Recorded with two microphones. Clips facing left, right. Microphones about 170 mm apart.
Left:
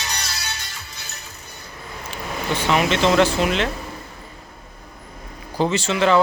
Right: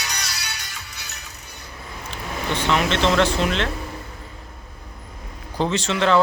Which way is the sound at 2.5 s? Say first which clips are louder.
Left 2 dB; 10° left (ahead or behind).